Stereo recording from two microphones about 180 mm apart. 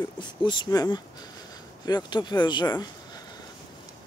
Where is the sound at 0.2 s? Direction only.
25° left (ahead or behind).